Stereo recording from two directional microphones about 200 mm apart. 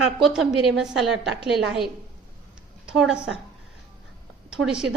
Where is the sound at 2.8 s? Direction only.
5° right (ahead or behind).